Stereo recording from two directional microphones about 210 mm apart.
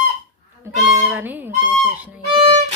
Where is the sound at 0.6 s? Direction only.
10° right (ahead or behind).